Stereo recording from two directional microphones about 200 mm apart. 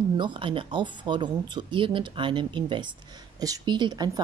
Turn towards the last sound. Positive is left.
turn(degrees=-20)  # may be behind; listen again after turning